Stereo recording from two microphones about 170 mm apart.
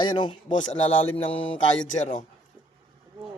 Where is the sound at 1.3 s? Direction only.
10° left (ahead or behind).